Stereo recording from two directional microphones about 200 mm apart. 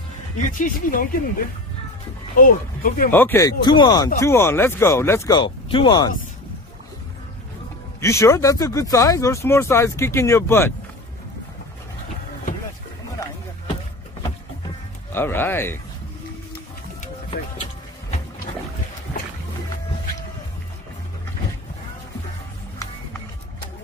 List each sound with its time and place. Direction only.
0.4 s speech: 40° left (ahead or behind)
2.3 s speech: 45° left (ahead or behind)
3.1 s speech: 10° left (ahead or behind)
5.4 s speech: 25° left (ahead or behind)
8.0 s speech: 15° left (ahead or behind)
15.1 s speech: 10° left (ahead or behind)